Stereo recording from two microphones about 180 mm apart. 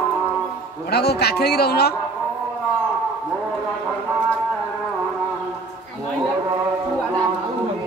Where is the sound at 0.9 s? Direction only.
65° left (ahead or behind).